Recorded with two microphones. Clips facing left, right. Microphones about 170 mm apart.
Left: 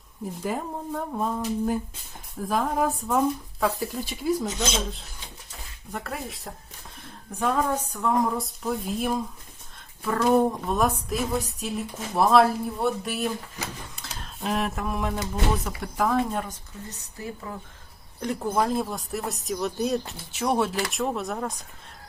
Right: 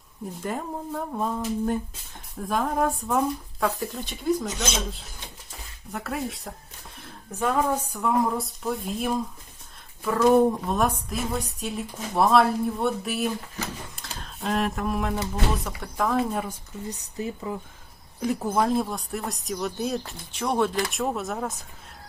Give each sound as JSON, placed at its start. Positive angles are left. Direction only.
{"t": 0.4, "sound": "speech", "side_deg": 0}
{"t": 5.9, "sound": "speech", "side_deg": 0}
{"t": 17.0, "sound": "speech", "side_deg": -20}
{"t": 18.2, "sound": "speech", "side_deg": -5}